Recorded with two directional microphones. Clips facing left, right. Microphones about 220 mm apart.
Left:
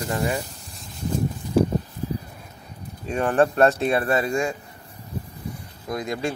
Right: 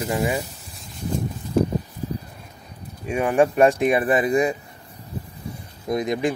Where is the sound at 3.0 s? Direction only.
10° right (ahead or behind).